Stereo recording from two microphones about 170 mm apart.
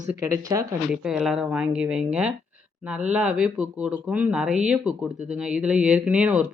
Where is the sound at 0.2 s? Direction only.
20° right (ahead or behind).